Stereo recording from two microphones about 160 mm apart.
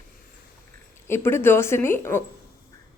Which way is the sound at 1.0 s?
15° left (ahead or behind).